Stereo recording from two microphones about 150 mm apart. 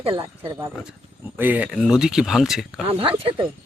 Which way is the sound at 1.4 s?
10° right (ahead or behind).